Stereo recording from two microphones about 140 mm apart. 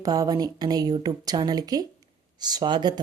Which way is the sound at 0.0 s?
25° right (ahead or behind).